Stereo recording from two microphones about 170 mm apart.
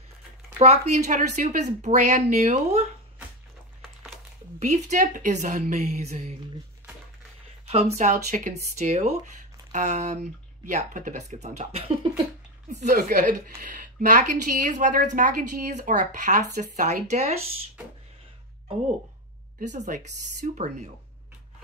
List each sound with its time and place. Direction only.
0.6 s a woman's voice: 40° right (ahead or behind)
4.6 s a woman's voice: 45° right (ahead or behind)
8.0 s a woman's voice: 45° right (ahead or behind)
12.8 s a woman's voice: 55° right (ahead or behind)
19.7 s a woman's voice: 45° right (ahead or behind)